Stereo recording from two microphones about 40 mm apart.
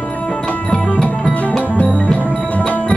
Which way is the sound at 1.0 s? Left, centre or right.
Centre.